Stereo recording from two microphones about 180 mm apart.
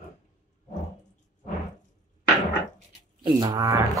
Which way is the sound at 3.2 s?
20° right (ahead or behind).